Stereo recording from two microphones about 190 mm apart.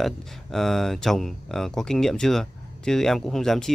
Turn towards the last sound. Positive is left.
turn(degrees=0)  # may be behind; listen again after turning